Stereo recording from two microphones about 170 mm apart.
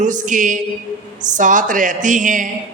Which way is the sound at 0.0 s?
50° right (ahead or behind).